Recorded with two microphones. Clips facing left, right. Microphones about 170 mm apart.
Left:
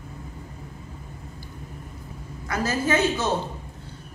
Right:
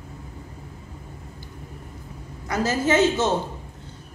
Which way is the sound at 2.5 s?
25° right (ahead or behind).